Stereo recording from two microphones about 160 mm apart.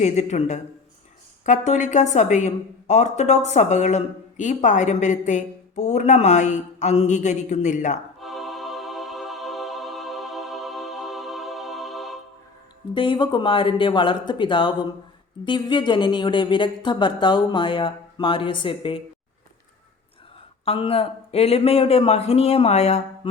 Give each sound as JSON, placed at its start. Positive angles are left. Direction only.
{"t": 0.0, "sound": "a woman's voice", "side_deg": 45}
{"t": 8.2, "sound": "music", "side_deg": 0}
{"t": 12.9, "sound": "speech", "side_deg": 30}
{"t": 20.7, "sound": "speech", "side_deg": 35}